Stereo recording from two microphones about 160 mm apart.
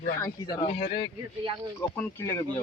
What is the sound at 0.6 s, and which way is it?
Speech, 35° left (ahead or behind).